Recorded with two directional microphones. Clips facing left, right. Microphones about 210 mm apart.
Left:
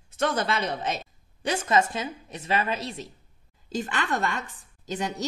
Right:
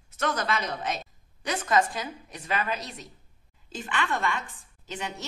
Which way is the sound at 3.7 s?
40° left (ahead or behind).